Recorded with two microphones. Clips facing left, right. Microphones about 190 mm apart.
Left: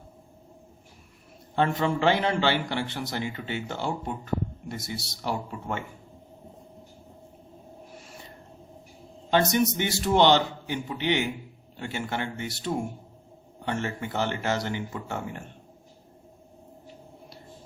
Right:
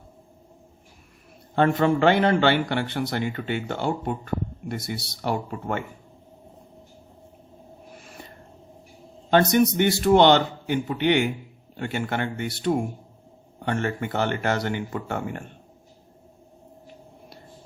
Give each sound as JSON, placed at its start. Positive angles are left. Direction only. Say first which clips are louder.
{"t": 1.5, "sound": "a man's voice", "louder": "right 5 dB", "side_deg": -55}
{"t": 9.3, "sound": "a man's voice", "louder": "right 4 dB", "side_deg": -55}